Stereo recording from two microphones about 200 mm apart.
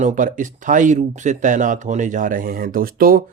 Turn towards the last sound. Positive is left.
turn(degrees=-45)  # may be behind; listen again after turning